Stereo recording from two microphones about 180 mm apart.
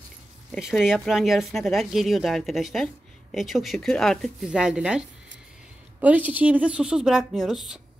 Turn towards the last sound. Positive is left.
turn(degrees=0)  # may be behind; listen again after turning